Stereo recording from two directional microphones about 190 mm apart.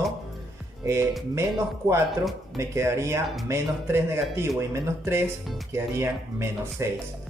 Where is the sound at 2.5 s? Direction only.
15° right (ahead or behind).